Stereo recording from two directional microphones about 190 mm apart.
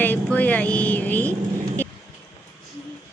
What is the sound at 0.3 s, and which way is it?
Speech, 10° left (ahead or behind).